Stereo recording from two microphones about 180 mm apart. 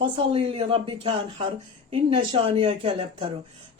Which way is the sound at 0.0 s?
30° right (ahead or behind).